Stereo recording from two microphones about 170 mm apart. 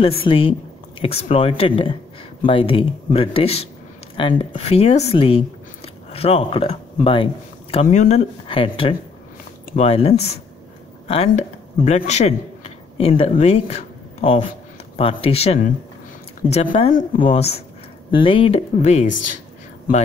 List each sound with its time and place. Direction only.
0.0 s speech: 30° left (ahead or behind)
7.7 s a man's voice: 40° left (ahead or behind)